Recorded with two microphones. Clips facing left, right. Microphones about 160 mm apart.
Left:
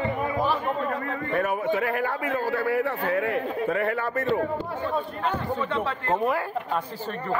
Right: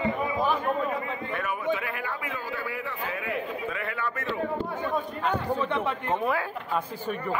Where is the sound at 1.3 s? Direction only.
45° left (ahead or behind).